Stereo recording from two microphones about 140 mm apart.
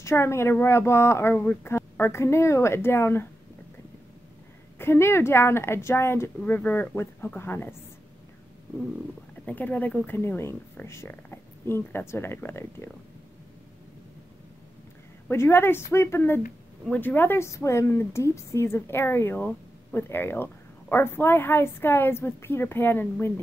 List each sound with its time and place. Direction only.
0.0 s a woman's voice: 20° left (ahead or behind)
4.7 s a woman's voice: 15° left (ahead or behind)
9.5 s a woman's voice: 10° left (ahead or behind)
15.2 s a woman's voice: 15° left (ahead or behind)